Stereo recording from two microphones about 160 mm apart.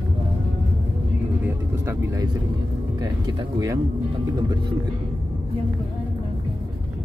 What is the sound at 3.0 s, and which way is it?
Music, 25° right (ahead or behind).